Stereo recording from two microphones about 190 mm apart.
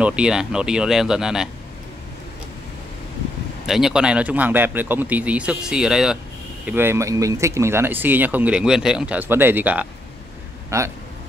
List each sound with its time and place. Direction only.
0.0 s speech: 5° right (ahead or behind)
3.6 s speech: centre (ahead or behind)